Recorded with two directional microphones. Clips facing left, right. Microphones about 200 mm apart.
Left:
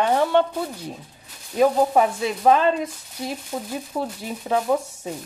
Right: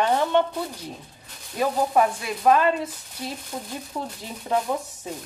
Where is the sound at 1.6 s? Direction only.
20° left (ahead or behind).